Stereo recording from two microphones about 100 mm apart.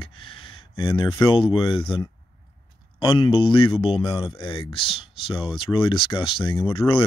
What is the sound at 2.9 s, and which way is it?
Speech, 50° left (ahead or behind).